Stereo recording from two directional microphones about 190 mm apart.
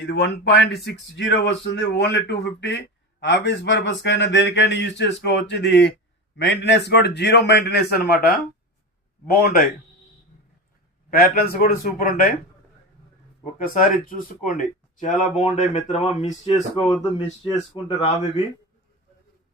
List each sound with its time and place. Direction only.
0.0 s speech: 65° left (ahead or behind)
11.1 s speech: 50° left (ahead or behind)
13.7 s speech: 45° left (ahead or behind)